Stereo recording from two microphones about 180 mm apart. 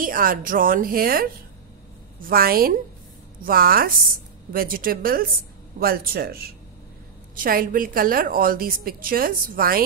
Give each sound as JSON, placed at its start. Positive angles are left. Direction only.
{"t": 0.0, "sound": "a woman's voice", "side_deg": -50}